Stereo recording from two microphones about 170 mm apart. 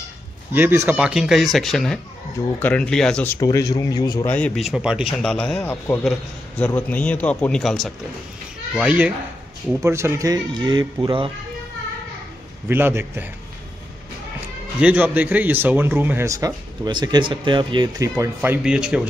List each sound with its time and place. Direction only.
0.5 s a man's voice: 10° right (ahead or behind); by 3.3 s 5° left (ahead or behind)
3.3 s speech: 20° left (ahead or behind)
4.3 s a man's voice: 5° left (ahead or behind); by 11.3 s 30° right (ahead or behind)
12.6 s speech: 15° right (ahead or behind)
14.8 s speech: 10° right (ahead or behind)